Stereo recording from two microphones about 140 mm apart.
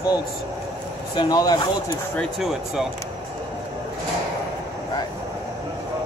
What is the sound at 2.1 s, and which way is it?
Speech, centre (ahead or behind).